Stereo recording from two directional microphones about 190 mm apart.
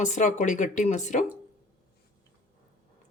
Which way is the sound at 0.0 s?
40° left (ahead or behind).